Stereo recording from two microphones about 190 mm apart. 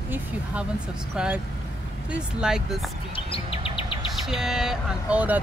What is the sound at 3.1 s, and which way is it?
Bird vocalization, 30° left (ahead or behind).